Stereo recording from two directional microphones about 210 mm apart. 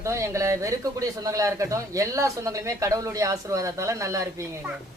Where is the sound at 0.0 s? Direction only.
15° right (ahead or behind).